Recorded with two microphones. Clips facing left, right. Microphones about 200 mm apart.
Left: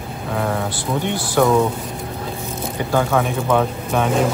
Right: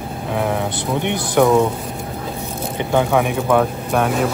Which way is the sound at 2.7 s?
15° right (ahead or behind).